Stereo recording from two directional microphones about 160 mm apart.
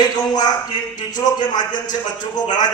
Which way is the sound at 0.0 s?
25° left (ahead or behind).